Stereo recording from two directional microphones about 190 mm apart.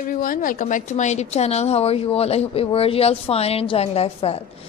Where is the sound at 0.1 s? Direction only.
45° left (ahead or behind).